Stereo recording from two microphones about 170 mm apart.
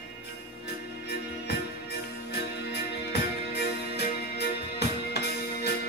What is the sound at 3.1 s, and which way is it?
Music, 75° left (ahead or behind).